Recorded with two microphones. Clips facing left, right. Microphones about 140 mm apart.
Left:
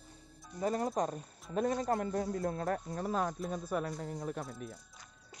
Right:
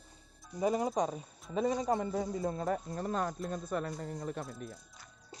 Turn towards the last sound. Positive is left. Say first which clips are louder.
# even
turn(degrees=0)  # may be behind; listen again after turning